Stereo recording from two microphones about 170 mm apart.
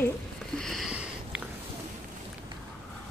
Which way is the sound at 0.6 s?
Centre (ahead or behind).